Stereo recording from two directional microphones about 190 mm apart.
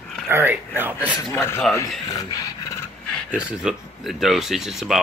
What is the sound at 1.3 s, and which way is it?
Speech, 15° left (ahead or behind).